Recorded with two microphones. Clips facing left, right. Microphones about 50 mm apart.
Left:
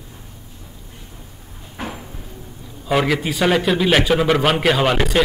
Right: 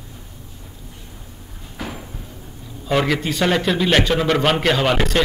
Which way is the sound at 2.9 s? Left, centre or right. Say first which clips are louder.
Left 1 dB; centre.